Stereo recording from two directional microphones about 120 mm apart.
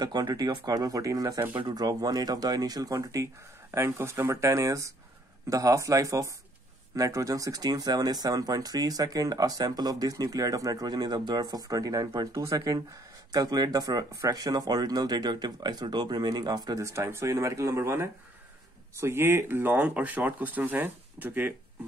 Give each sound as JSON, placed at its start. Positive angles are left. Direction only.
{"t": 0.0, "sound": "speech", "side_deg": -35}